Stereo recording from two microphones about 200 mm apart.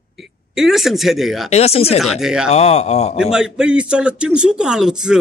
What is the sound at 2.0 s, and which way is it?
Speech, centre (ahead or behind).